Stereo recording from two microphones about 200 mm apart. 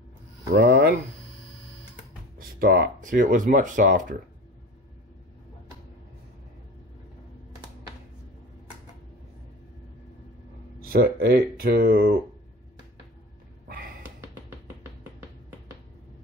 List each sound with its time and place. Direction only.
0.5 s speech: 55° right (ahead or behind)
2.3 s speech: 45° right (ahead or behind)
10.9 s speech: 50° right (ahead or behind)